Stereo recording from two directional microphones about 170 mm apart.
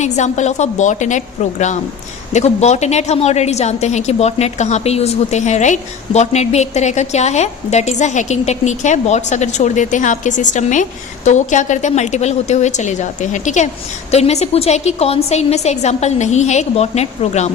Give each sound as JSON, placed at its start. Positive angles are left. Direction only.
{"t": 0.0, "sound": "a woman's voice", "side_deg": 45}